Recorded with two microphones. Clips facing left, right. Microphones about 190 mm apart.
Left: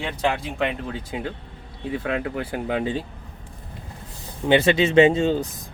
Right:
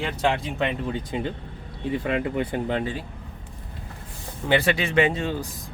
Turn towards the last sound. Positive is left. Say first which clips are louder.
# left 6 dB
turn(degrees=25)  # may be behind; listen again after turning